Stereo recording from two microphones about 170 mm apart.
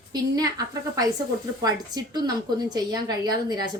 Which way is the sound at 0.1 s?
20° right (ahead or behind).